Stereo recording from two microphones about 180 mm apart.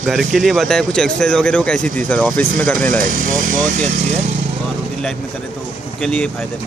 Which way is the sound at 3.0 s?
45° right (ahead or behind).